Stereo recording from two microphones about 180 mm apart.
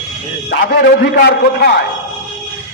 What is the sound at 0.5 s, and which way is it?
A man's voice, 65° left (ahead or behind).